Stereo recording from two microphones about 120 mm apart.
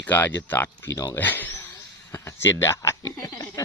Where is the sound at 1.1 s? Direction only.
15° left (ahead or behind).